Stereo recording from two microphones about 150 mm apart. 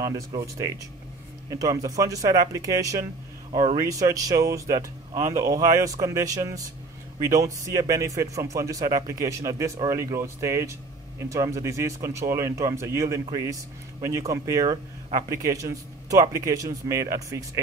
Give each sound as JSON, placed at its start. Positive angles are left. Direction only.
{"t": 0.4, "sound": "a man's voice", "side_deg": -20}
{"t": 5.1, "sound": "speech", "side_deg": -50}
{"t": 5.4, "sound": "a man's voice", "side_deg": -25}